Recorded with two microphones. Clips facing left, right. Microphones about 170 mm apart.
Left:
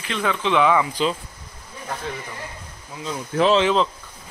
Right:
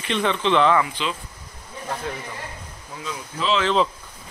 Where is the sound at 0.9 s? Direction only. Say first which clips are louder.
Left 5 dB; 40° left (ahead or behind).